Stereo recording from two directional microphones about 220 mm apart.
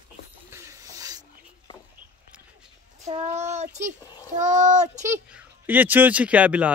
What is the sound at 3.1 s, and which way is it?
A child's voice, 30° right (ahead or behind).